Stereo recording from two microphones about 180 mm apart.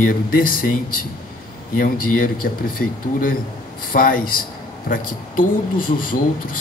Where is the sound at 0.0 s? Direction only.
50° left (ahead or behind).